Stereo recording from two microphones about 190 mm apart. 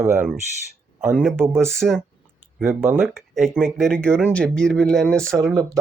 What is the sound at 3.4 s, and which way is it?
Speech, 5° right (ahead or behind).